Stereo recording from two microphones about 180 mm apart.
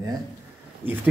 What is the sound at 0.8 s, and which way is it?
Speech, 10° right (ahead or behind).